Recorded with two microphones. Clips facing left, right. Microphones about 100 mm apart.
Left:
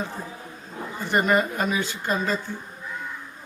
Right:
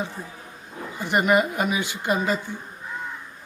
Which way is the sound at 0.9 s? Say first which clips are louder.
Right 1 dB; 15° right (ahead or behind).